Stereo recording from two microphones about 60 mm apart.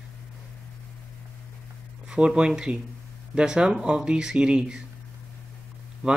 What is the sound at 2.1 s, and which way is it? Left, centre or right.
Speech, centre.